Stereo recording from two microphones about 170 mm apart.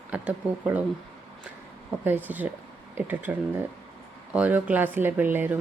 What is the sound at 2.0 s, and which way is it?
Speech, 10° right (ahead or behind).